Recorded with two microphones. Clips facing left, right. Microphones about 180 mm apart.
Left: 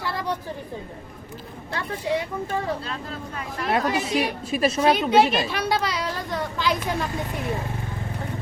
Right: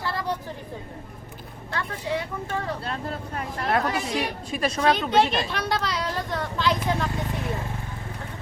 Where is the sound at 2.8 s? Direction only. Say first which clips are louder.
Right 2 dB; 55° right (ahead or behind).